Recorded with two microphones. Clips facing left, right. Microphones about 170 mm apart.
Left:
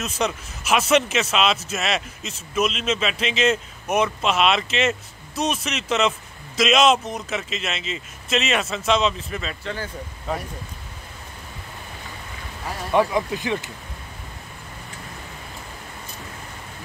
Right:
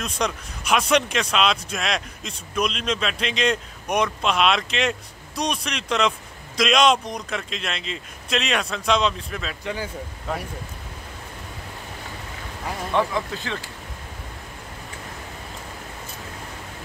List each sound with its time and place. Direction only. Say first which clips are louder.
0.0 s speech: left 1 dB; 5° left (ahead or behind)
12.9 s speech: left 4 dB; 15° left (ahead or behind)